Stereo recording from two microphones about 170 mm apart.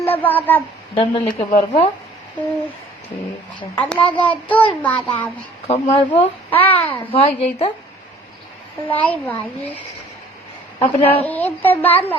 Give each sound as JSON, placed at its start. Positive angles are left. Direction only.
{"t": 0.0, "sound": "speech", "side_deg": 10}
{"t": 0.9, "sound": "a woman's voice", "side_deg": 30}
{"t": 3.8, "sound": "child singing", "side_deg": 10}
{"t": 5.6, "sound": "a woman's voice", "side_deg": 40}
{"t": 6.0, "sound": "a woman's voice", "side_deg": 30}
{"t": 8.9, "sound": "child singing", "side_deg": 10}
{"t": 10.8, "sound": "a woman's voice", "side_deg": 35}
{"t": 11.2, "sound": "child singing", "side_deg": 10}